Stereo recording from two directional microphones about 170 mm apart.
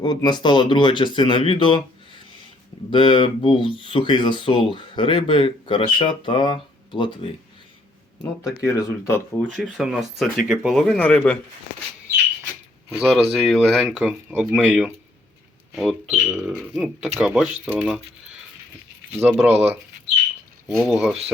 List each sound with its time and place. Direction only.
0.0 s speech: 25° left (ahead or behind)
2.9 s speech: 30° left (ahead or behind)
8.2 s speech: 15° left (ahead or behind)
9.4 s speech: centre (ahead or behind)
12.9 s speech: 5° right (ahead or behind)
19.1 s speech: 5° right (ahead or behind)
20.7 s speech: centre (ahead or behind)